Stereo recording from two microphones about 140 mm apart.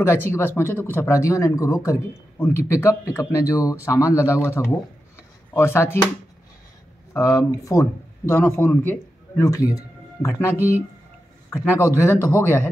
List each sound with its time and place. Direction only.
0.0 s speech: 15° left (ahead or behind)
7.2 s a man's voice: 25° left (ahead or behind)
9.4 s speech: 25° left (ahead or behind)